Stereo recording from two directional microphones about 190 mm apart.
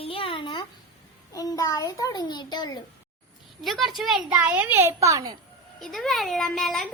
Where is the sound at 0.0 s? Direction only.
30° left (ahead or behind).